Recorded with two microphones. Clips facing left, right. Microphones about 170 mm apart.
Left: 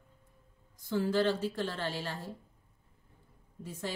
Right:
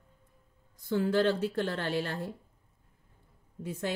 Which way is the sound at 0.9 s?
60° right (ahead or behind).